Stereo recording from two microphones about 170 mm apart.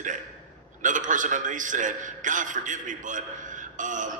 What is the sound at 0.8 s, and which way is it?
A man's voice, 50° right (ahead or behind).